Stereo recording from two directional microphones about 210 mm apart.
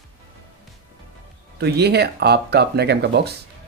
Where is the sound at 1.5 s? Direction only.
50° right (ahead or behind).